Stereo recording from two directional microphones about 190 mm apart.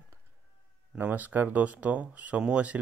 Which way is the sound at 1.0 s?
10° right (ahead or behind).